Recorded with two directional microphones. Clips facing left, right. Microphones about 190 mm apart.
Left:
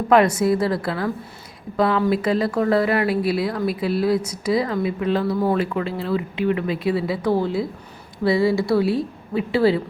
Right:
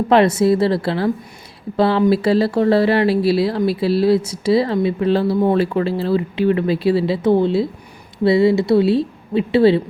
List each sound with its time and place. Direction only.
0.1 s speech: 25° right (ahead or behind)